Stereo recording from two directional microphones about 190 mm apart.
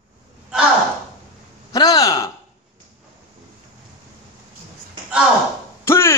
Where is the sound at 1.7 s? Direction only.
20° left (ahead or behind).